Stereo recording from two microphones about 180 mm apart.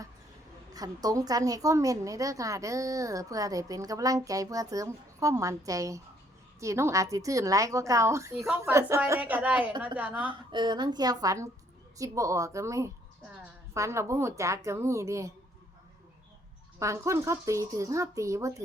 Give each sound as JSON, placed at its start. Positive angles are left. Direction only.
{"t": 0.7, "sound": "a woman's voice", "side_deg": -20}
{"t": 10.5, "sound": "a woman's voice", "side_deg": -25}
{"t": 16.8, "sound": "speech", "side_deg": -15}